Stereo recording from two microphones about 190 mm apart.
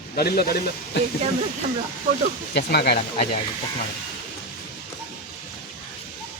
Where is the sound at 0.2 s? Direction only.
55° left (ahead or behind).